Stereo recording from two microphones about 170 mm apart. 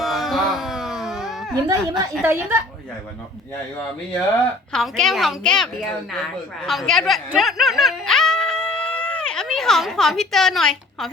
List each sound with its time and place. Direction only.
0.0 s music: centre (ahead or behind)
1.6 s a woman's voice: 25° right (ahead or behind)
4.7 s a woman's voice: 5° left (ahead or behind)
7.3 s music: centre (ahead or behind)